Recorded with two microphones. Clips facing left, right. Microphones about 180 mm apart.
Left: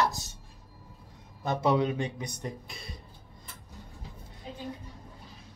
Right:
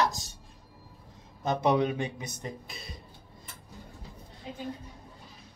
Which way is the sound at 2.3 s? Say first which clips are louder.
Left 1 dB; centre (ahead or behind).